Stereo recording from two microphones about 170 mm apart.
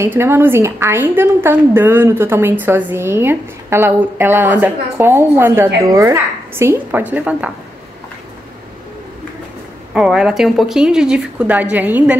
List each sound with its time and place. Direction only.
0.0 s a woman's voice: 15° right (ahead or behind)
9.9 s speech: 5° right (ahead or behind)